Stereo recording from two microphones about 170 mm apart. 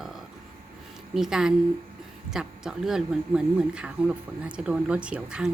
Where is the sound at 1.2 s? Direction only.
5° right (ahead or behind).